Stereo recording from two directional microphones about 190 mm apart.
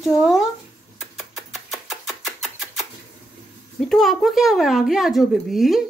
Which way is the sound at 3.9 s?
Centre (ahead or behind).